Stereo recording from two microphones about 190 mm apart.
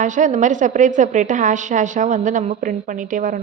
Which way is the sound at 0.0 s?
40° right (ahead or behind).